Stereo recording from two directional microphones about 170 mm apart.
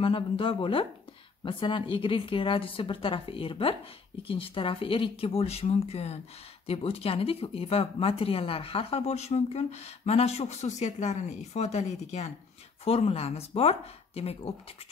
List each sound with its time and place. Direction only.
0.0 s speech: 30° left (ahead or behind)